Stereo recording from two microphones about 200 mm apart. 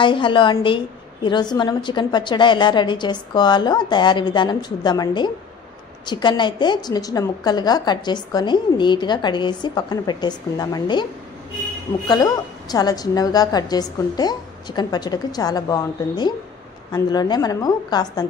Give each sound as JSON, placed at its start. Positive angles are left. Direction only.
{"t": 0.0, "sound": "a woman's voice", "side_deg": 25}
{"t": 12.1, "sound": "a woman's voice", "side_deg": 20}